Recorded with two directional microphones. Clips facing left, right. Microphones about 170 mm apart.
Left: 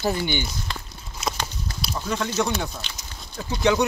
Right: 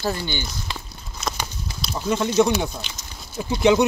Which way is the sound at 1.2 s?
10° left (ahead or behind).